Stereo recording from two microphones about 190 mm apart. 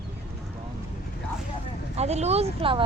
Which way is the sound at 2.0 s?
35° right (ahead or behind).